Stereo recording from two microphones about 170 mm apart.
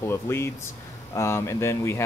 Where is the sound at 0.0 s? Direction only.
15° left (ahead or behind).